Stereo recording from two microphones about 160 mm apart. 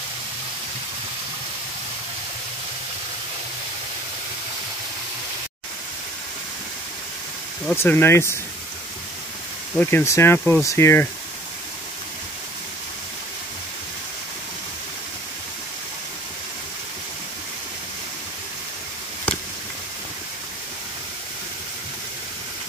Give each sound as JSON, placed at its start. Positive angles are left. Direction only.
{"t": 7.7, "sound": "speech", "side_deg": 15}
{"t": 9.8, "sound": "speech", "side_deg": 15}